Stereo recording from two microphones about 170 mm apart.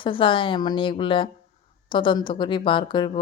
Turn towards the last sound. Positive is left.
turn(degrees=30)  # may be behind; listen again after turning